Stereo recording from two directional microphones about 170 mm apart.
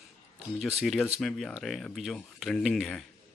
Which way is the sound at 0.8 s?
Centre (ahead or behind).